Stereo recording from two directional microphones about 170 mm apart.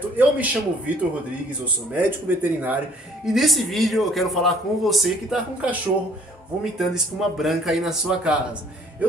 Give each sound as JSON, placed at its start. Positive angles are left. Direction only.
{"t": 0.2, "sound": "speech", "side_deg": -10}
{"t": 2.0, "sound": "speech", "side_deg": -10}
{"t": 3.3, "sound": "a man's voice", "side_deg": 0}